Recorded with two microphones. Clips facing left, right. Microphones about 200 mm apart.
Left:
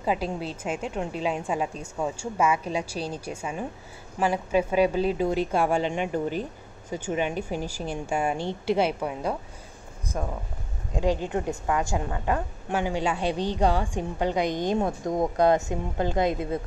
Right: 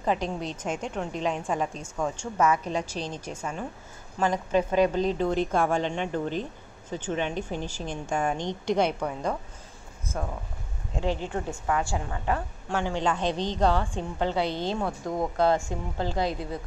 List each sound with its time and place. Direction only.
0.0 s a woman's voice: 5° left (ahead or behind)
11.0 s a woman's voice: 15° left (ahead or behind)